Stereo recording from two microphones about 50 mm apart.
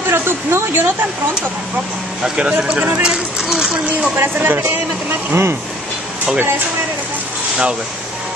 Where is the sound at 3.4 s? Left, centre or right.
Centre.